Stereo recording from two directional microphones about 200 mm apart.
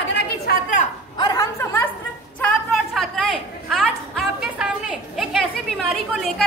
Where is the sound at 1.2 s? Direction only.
20° left (ahead or behind).